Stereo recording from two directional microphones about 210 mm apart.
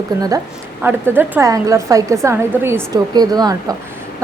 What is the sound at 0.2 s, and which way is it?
A woman's voice, 15° right (ahead or behind).